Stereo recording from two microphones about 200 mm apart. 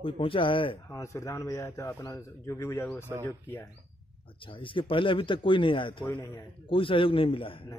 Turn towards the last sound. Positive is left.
turn(degrees=25)  # may be behind; listen again after turning